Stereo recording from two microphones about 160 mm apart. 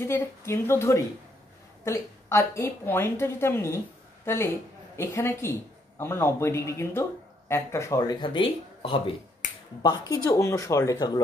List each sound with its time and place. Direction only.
0.0 s speech: 15° left (ahead or behind)
4.9 s speech: 15° left (ahead or behind)